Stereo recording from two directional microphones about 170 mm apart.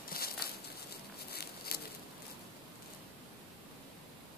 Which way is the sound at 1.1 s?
65° left (ahead or behind).